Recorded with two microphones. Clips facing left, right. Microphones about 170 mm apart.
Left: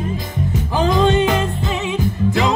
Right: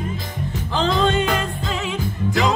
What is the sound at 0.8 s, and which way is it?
Music, 10° left (ahead or behind).